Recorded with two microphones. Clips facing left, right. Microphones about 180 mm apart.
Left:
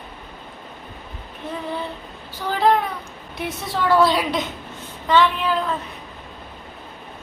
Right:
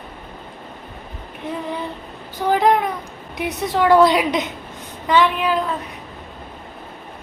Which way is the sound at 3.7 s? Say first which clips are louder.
Right 4 dB; 20° right (ahead or behind).